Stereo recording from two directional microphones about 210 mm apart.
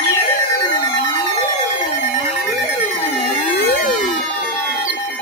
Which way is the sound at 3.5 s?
45° left (ahead or behind).